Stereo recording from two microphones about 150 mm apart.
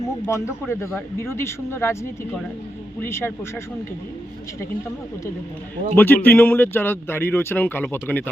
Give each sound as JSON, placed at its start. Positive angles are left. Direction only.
{"t": 0.3, "sound": "speech", "side_deg": 20}
{"t": 5.9, "sound": "speech", "side_deg": 15}